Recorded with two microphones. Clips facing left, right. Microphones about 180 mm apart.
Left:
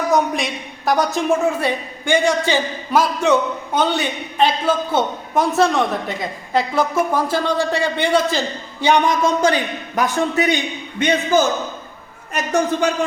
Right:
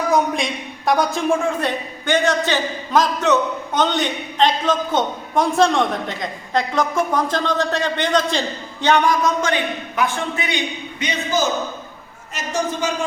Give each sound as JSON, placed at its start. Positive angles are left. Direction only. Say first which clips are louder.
{"t": 0.1, "sound": "a woman's voice", "louder": "even", "side_deg": 0}
{"t": 9.4, "sound": "a man's voice", "louder": "left 3 dB", "side_deg": 40}
{"t": 11.0, "sound": "speech", "louder": "left 9 dB", "side_deg": 50}
{"t": 12.3, "sound": "a woman's voice", "louder": "left 5 dB", "side_deg": 60}